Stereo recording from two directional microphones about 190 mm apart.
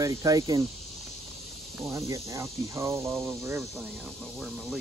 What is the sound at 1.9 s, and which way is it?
Speech, 15° right (ahead or behind).